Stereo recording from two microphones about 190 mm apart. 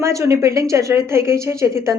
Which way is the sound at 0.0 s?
15° right (ahead or behind).